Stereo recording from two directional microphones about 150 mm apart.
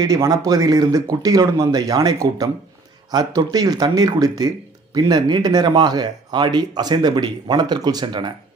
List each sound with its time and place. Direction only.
0.0 s speech: 25° right (ahead or behind)